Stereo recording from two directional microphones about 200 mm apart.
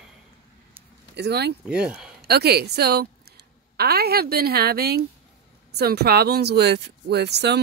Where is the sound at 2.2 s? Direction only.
55° right (ahead or behind).